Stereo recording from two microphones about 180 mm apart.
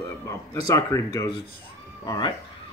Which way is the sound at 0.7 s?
15° left (ahead or behind).